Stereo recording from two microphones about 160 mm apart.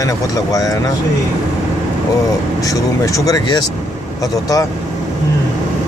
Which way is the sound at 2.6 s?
20° left (ahead or behind).